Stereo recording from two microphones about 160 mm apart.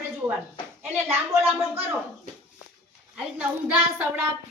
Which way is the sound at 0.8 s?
15° right (ahead or behind).